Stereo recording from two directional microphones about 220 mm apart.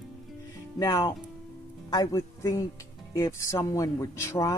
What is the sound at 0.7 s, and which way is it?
Speech, 15° left (ahead or behind).